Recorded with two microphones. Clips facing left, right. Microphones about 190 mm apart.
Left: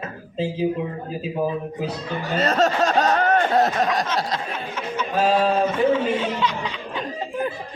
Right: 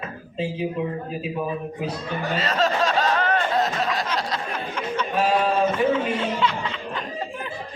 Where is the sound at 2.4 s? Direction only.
45° left (ahead or behind).